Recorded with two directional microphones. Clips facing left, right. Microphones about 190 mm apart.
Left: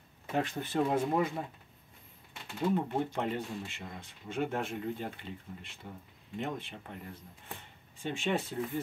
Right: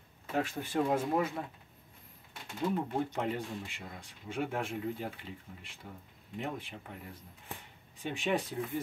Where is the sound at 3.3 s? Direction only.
10° right (ahead or behind).